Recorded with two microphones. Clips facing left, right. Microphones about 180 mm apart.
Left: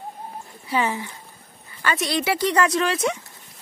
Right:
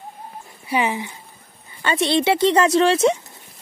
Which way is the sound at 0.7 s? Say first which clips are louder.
Right 2 dB; 15° right (ahead or behind).